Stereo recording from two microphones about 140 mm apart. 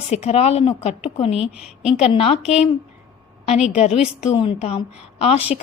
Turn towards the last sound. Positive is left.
turn(degrees=45)  # may be behind; listen again after turning